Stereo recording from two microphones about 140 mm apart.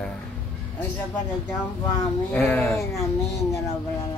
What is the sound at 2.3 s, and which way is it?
Speech, 10° left (ahead or behind).